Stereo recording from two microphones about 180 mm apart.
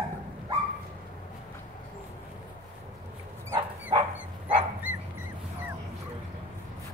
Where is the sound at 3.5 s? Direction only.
15° right (ahead or behind).